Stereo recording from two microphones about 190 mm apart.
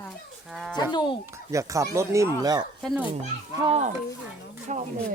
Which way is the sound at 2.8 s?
Centre (ahead or behind).